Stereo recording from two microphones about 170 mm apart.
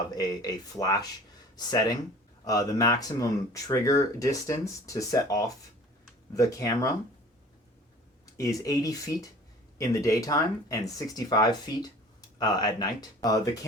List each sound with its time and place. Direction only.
0.2 s speech: 20° left (ahead or behind)
8.4 s speech: 20° left (ahead or behind)